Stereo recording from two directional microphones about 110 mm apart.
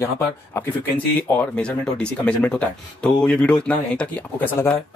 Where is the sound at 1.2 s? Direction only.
10° left (ahead or behind).